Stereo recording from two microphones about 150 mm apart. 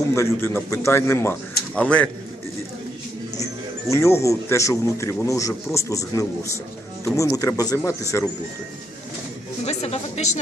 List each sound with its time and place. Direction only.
0.1 s a man's voice: 15° left (ahead or behind)
3.9 s speech: 20° left (ahead or behind)
9.6 s music: 45° left (ahead or behind)